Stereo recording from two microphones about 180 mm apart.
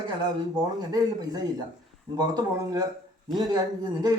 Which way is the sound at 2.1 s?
20° right (ahead or behind).